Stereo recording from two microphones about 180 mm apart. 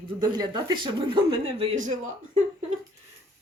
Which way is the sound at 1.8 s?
45° right (ahead or behind).